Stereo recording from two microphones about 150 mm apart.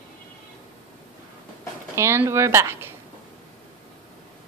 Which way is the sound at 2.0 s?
15° right (ahead or behind).